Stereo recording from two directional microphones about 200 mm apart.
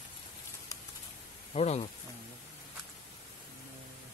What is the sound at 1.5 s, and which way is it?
Speech, 30° left (ahead or behind).